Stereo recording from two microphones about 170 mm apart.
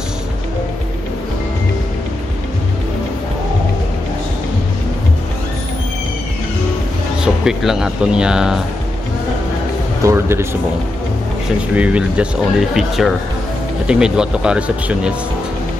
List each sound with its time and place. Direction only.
7.4 s speech: 5° right (ahead or behind)
10.0 s speech: 15° right (ahead or behind)
11.7 s speech: 5° right (ahead or behind)